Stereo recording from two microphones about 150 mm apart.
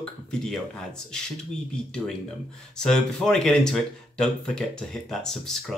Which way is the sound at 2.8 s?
5° left (ahead or behind).